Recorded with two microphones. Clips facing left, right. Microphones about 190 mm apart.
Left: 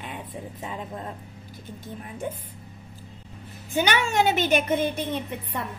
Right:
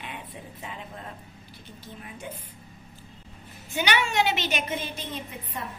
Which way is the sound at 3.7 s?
45° left (ahead or behind).